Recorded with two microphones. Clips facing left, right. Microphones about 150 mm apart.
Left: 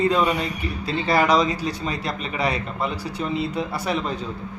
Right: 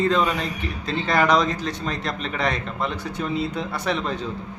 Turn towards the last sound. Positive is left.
turn(degrees=5)  # may be behind; listen again after turning